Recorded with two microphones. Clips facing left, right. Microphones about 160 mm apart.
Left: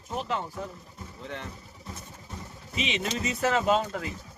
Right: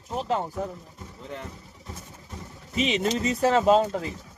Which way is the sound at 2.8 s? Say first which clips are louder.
Right 6 dB; 40° right (ahead or behind).